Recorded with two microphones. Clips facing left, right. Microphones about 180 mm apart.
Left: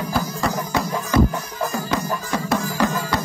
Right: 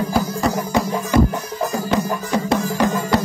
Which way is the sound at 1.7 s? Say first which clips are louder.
Right 4 dB; 20° right (ahead or behind).